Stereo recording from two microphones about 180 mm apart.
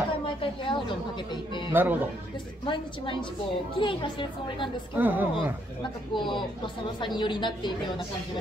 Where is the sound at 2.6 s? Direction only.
25° left (ahead or behind).